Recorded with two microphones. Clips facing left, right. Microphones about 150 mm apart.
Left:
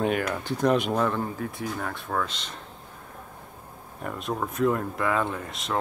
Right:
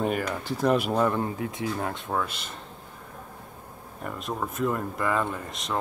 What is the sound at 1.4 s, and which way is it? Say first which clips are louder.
Speech: right 2 dB; 20° right (ahead or behind).